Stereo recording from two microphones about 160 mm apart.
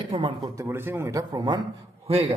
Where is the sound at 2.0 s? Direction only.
40° right (ahead or behind).